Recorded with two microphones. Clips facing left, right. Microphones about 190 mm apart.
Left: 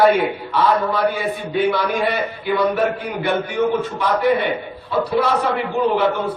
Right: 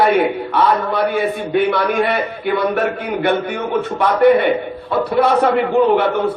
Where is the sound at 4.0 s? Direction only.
60° right (ahead or behind).